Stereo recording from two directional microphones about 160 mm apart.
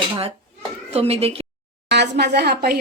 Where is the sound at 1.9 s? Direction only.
90° right.